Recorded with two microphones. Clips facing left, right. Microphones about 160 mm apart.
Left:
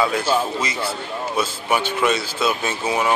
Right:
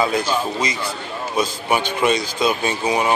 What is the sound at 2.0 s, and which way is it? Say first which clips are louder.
Speech: right 2 dB; 15° right (ahead or behind).